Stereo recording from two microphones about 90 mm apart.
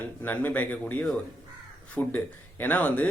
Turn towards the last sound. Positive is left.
turn(degrees=15)  # may be behind; listen again after turning